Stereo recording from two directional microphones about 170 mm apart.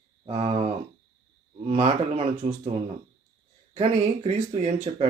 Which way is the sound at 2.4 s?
45° right (ahead or behind).